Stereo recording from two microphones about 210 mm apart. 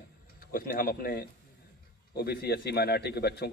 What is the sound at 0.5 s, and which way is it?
A man's voice, 45° left (ahead or behind).